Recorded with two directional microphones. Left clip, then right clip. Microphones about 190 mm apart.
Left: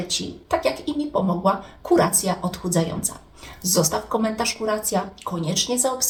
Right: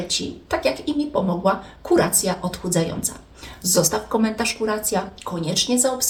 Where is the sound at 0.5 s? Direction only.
15° right (ahead or behind).